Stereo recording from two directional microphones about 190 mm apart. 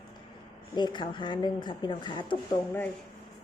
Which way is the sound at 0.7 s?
25° left (ahead or behind).